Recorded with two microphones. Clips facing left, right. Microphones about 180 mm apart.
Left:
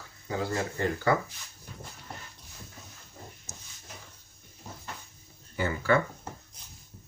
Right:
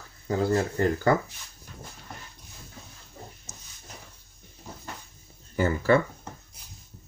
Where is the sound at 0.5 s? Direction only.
40° right (ahead or behind).